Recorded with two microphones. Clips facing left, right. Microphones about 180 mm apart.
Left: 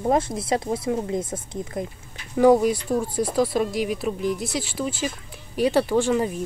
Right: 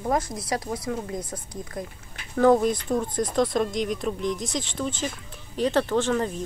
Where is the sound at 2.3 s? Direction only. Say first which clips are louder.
Left 2 dB; 10° left (ahead or behind).